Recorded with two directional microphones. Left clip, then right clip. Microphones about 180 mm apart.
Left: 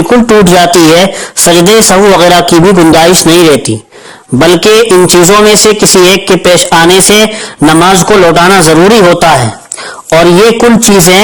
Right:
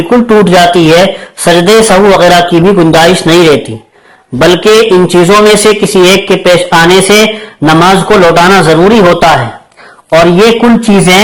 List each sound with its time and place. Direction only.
0.1 s a man's voice: 35° left (ahead or behind)